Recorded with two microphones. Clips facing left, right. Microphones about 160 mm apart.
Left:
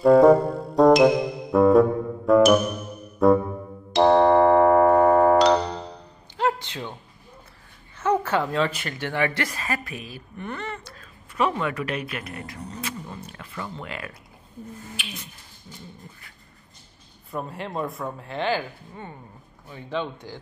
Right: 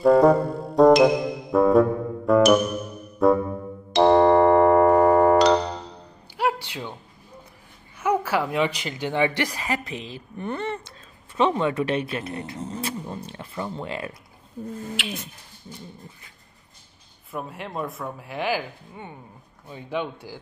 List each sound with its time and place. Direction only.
0.0 s music: centre (ahead or behind)
6.3 s music: 10° right (ahead or behind)
8.0 s speech: 10° right (ahead or behind); by 14.1 s 30° right (ahead or behind)
17.3 s a man's voice: centre (ahead or behind)